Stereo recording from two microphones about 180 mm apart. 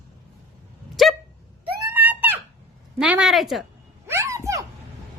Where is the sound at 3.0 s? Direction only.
5° right (ahead or behind).